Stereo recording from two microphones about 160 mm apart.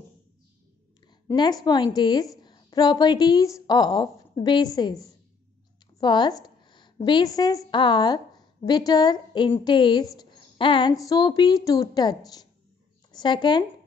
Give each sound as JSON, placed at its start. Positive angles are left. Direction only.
{"t": 1.3, "sound": "a woman's voice", "side_deg": 25}